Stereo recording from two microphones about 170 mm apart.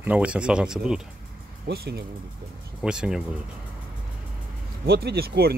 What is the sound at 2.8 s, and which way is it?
Speech, 5° right (ahead or behind).